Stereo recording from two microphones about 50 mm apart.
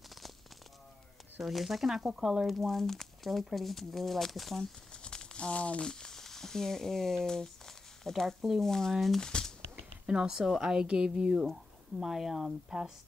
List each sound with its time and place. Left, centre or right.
1.4 s speech: centre
5.0 s crumpling: centre
5.9 s speech: centre
9.2 s shuffling cards: centre
10.0 s a woman's voice: centre